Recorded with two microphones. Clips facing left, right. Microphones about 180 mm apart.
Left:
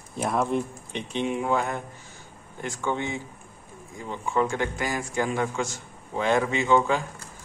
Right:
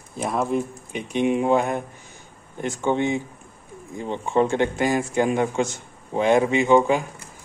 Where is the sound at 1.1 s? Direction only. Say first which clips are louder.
Right 6 dB; 15° right (ahead or behind).